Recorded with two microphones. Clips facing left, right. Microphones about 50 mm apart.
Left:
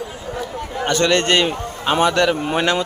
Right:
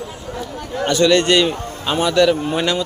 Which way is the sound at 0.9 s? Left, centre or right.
Left.